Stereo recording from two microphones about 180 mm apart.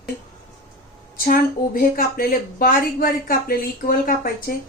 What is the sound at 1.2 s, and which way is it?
A woman's voice, 55° left (ahead or behind).